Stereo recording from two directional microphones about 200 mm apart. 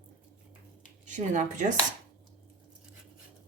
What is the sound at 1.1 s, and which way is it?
Speech, 40° right (ahead or behind).